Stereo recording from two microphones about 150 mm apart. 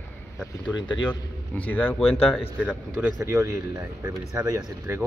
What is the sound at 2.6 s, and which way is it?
Speech, 5° right (ahead or behind).